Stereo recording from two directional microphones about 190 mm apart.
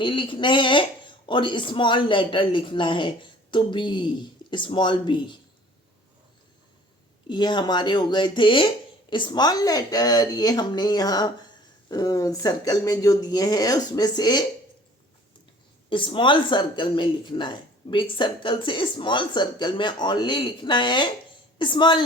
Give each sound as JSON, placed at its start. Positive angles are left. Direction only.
{"t": 0.0, "sound": "speech", "side_deg": 25}
{"t": 7.3, "sound": "speech", "side_deg": 25}
{"t": 15.9, "sound": "speech", "side_deg": 25}